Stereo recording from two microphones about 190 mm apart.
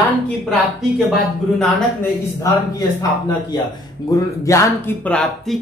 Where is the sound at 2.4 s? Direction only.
20° left (ahead or behind).